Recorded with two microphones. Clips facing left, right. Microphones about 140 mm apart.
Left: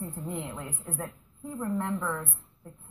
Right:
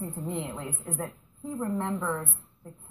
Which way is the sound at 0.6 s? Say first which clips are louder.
Right 2 dB; centre (ahead or behind).